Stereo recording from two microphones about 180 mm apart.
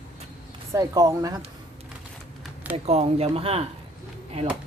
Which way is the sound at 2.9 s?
35° right (ahead or behind).